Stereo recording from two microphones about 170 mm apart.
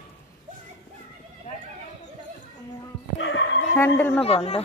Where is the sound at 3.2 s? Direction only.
90° left.